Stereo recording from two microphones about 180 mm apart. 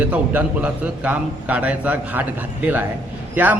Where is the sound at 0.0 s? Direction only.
10° right (ahead or behind).